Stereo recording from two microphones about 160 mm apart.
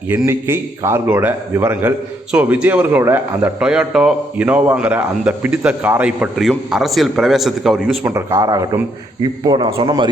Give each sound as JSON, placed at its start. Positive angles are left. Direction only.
{"t": 0.1, "sound": "a man's voice", "side_deg": -10}
{"t": 8.1, "sound": "speech", "side_deg": -20}